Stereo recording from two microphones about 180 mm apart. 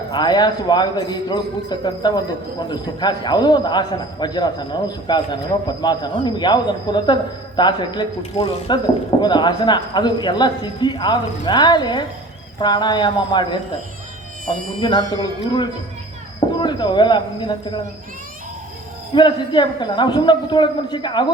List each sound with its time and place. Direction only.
0.1 s a man's voice: 25° left (ahead or behind)
14.8 s a man's voice: 25° left (ahead or behind)
19.1 s a man's voice: 25° left (ahead or behind)